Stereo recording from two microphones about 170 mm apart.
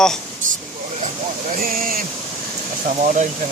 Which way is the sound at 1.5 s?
60° right (ahead or behind).